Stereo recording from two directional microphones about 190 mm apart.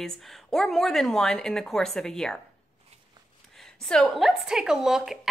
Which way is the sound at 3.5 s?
Centre (ahead or behind).